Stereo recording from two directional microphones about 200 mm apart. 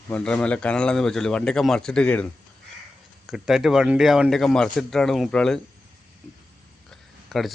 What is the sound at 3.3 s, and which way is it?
Speech, centre (ahead or behind).